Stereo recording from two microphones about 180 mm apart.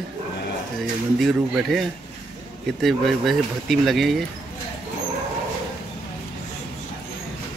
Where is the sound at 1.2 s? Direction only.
Centre (ahead or behind).